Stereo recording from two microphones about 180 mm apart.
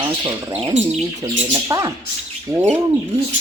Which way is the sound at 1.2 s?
20° right (ahead or behind).